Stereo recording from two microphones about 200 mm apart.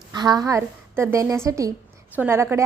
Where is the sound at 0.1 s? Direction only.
20° right (ahead or behind).